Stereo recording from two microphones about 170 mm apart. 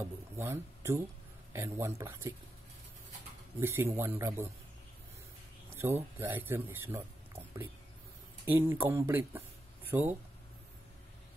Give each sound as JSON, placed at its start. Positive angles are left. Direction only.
{"t": 0.0, "sound": "speech", "side_deg": -15}
{"t": 3.5, "sound": "speech", "side_deg": -15}
{"t": 5.8, "sound": "speech", "side_deg": -15}
{"t": 8.5, "sound": "speech", "side_deg": -10}